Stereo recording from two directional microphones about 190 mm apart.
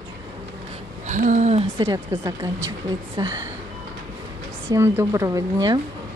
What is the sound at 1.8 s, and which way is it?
Speech, 20° right (ahead or behind).